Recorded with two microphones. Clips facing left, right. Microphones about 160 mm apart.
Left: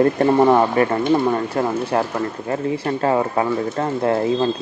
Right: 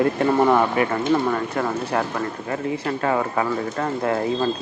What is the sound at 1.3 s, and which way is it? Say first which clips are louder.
Speech: left 3 dB; 30° left (ahead or behind).